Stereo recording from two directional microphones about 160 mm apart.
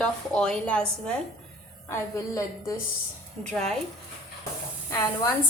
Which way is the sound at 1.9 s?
20° left (ahead or behind).